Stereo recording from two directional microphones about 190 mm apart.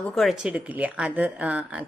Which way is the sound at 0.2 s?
5° right (ahead or behind).